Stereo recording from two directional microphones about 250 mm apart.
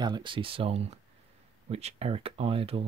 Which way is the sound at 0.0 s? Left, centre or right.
Centre.